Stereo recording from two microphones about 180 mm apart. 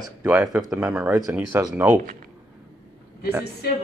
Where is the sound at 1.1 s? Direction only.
15° right (ahead or behind).